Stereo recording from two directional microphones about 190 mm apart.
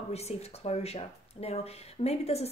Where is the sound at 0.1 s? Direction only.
35° left (ahead or behind).